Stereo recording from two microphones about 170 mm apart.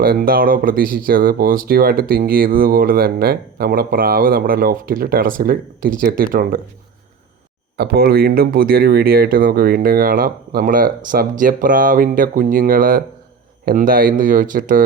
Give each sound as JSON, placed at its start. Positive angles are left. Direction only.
{"t": 0.0, "sound": "speech", "side_deg": -60}
{"t": 7.8, "sound": "speech", "side_deg": -65}